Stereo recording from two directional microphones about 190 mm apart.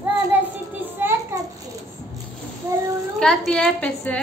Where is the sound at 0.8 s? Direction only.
10° right (ahead or behind).